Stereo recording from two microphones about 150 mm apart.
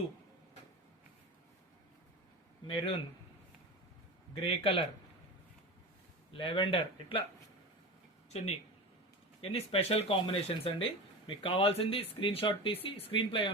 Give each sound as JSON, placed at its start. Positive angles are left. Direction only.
{"t": 2.6, "sound": "speech", "side_deg": 35}
{"t": 4.4, "sound": "speech", "side_deg": 40}
{"t": 6.3, "sound": "speech", "side_deg": 35}
{"t": 8.3, "sound": "speech", "side_deg": 45}